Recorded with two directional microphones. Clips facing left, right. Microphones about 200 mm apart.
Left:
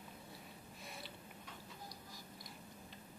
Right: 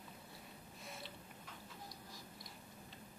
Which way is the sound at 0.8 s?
Centre (ahead or behind).